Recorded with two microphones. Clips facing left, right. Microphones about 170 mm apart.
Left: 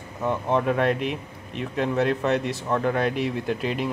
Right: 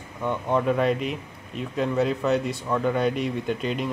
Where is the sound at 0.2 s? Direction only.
Centre (ahead or behind).